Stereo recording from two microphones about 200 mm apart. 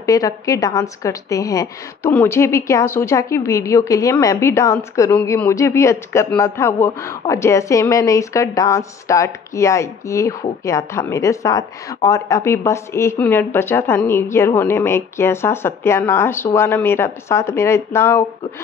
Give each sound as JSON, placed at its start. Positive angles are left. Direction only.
{"t": 0.0, "sound": "a woman's voice", "side_deg": 15}